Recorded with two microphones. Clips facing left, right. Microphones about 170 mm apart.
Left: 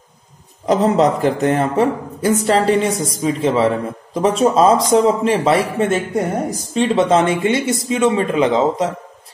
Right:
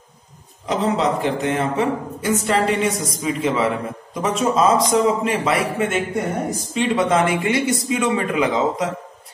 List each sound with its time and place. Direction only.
0.7 s a man's voice: 40° left (ahead or behind)